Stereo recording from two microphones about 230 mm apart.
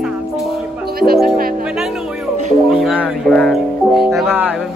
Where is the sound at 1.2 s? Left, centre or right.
Right.